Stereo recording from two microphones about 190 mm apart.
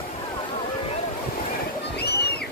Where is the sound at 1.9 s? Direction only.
60° left (ahead or behind).